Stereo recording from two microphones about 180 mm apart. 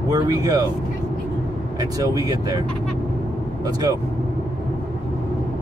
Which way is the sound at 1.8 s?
20° right (ahead or behind).